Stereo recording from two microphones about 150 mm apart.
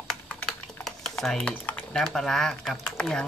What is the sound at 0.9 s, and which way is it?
Speech, centre (ahead or behind).